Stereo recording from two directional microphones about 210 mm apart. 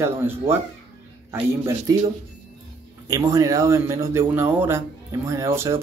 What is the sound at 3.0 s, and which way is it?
Speech, 15° right (ahead or behind).